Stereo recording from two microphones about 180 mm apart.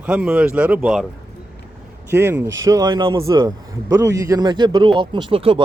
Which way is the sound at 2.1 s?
15° right (ahead or behind).